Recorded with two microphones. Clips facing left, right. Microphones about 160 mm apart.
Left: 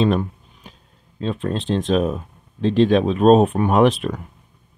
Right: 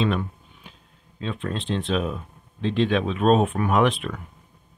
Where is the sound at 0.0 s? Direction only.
40° left (ahead or behind).